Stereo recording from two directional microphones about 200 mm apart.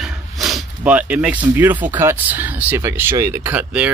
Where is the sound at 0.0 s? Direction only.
Centre (ahead or behind).